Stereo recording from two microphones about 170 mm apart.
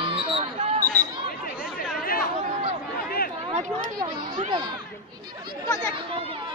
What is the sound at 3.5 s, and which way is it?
Speech, 45° right (ahead or behind).